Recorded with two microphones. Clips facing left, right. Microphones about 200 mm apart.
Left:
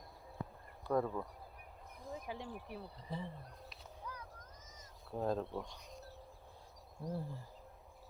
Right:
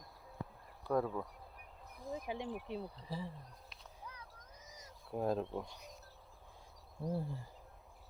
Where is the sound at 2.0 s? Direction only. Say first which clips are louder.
Right 4 dB; 20° right (ahead or behind).